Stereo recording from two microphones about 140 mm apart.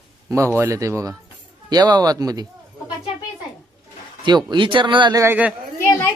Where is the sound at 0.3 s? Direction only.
20° right (ahead or behind).